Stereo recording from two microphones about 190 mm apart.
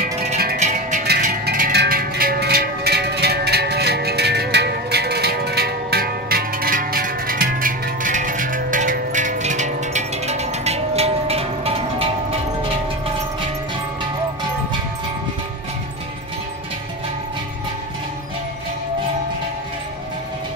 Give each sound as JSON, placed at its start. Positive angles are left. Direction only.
{"t": 0.6, "sound": "music", "side_deg": -40}
{"t": 1.4, "sound": "music", "side_deg": -60}